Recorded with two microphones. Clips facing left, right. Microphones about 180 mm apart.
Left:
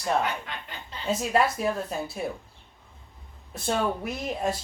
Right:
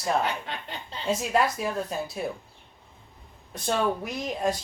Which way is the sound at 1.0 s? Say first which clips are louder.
Left 1 dB; centre (ahead or behind).